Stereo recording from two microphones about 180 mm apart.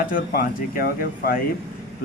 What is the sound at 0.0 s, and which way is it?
A man's voice, 50° left (ahead or behind).